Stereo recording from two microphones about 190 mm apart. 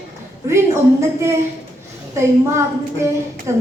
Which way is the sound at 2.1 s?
15° right (ahead or behind).